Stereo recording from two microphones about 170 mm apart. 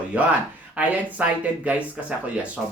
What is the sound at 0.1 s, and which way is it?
Speech, 10° right (ahead or behind).